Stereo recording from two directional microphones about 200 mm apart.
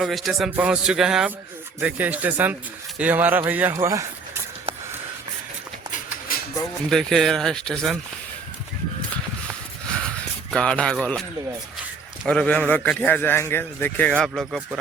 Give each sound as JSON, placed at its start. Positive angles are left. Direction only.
{"t": 0.0, "sound": "a man's voice", "side_deg": 0}
{"t": 6.9, "sound": "a man's voice", "side_deg": 0}
{"t": 10.5, "sound": "a man's voice", "side_deg": 5}
{"t": 12.2, "sound": "a man's voice", "side_deg": 5}